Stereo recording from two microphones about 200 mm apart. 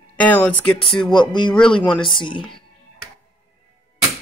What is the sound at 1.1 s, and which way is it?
Speech, 25° left (ahead or behind).